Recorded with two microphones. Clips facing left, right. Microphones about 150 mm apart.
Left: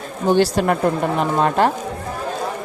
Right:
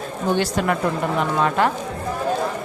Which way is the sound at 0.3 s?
35° left (ahead or behind).